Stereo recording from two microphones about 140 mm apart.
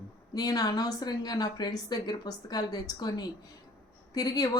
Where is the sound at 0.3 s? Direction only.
25° left (ahead or behind).